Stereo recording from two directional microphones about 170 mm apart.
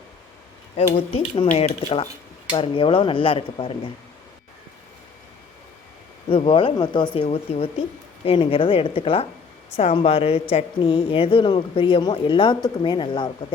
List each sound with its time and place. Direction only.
1.5 s speech: 40° left (ahead or behind)
6.2 s speech: 30° left (ahead or behind)